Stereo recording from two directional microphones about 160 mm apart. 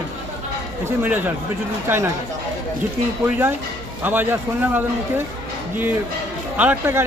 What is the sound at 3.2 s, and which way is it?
A man's voice, 15° right (ahead or behind).